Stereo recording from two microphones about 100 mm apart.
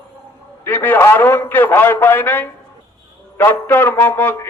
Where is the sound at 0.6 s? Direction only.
20° left (ahead or behind).